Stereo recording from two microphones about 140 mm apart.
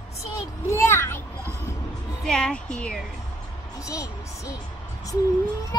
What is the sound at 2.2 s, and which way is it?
Speech, 5° left (ahead or behind).